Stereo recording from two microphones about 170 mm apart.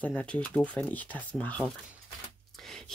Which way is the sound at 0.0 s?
10° left (ahead or behind).